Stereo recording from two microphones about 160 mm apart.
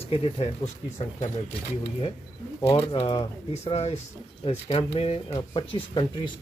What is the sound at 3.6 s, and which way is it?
Speech, 40° left (ahead or behind).